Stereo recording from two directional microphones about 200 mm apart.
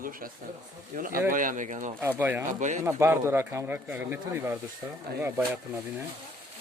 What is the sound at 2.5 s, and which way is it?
Speech, 40° right (ahead or behind).